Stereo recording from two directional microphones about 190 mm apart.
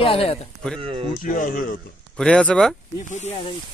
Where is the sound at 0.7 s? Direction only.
30° right (ahead or behind).